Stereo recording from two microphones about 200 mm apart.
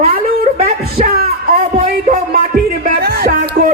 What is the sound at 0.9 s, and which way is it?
Music, 50° right (ahead or behind).